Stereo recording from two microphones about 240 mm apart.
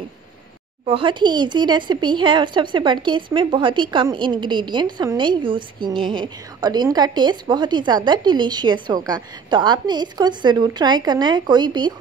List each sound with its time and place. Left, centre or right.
0.8 s a woman's voice: right